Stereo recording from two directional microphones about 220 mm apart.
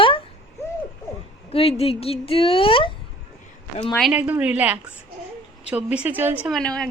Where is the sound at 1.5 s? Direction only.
25° left (ahead or behind).